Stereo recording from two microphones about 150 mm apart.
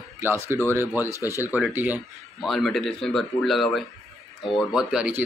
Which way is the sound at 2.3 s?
Centre (ahead or behind).